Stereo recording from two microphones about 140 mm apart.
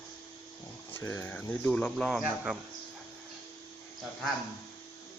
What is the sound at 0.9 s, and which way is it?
Speech, 15° left (ahead or behind).